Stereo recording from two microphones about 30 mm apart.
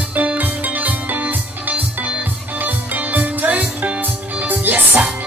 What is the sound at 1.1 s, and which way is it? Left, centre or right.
Music, right.